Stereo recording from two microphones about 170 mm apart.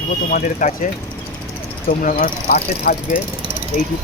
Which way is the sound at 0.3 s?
55° left (ahead or behind).